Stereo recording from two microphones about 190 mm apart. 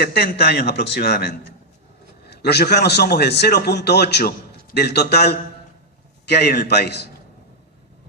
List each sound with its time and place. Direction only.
0.0 s a man's voice: 55° left (ahead or behind)